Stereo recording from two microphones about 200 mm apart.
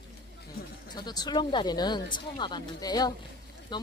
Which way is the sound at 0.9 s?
20° left (ahead or behind).